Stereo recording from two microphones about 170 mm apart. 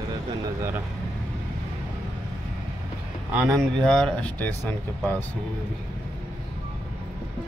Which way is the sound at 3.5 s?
5° left (ahead or behind).